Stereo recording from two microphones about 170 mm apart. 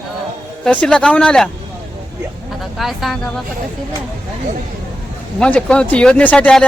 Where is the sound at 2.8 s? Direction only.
Centre (ahead or behind).